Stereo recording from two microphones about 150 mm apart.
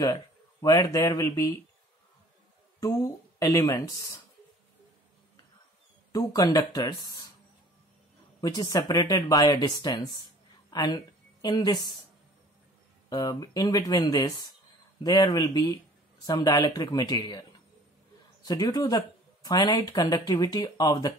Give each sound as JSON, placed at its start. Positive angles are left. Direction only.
{"t": 0.0, "sound": "speech", "side_deg": 25}
{"t": 2.8, "sound": "speech", "side_deg": 20}
{"t": 6.1, "sound": "speech", "side_deg": 25}
{"t": 8.4, "sound": "speech", "side_deg": 25}
{"t": 13.1, "sound": "speech", "side_deg": 25}